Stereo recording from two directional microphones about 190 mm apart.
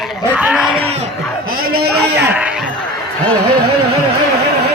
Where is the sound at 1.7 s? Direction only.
55° right (ahead or behind).